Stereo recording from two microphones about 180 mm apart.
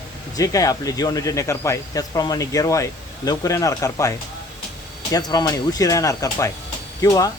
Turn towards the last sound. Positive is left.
turn(degrees=20)  # may be behind; listen again after turning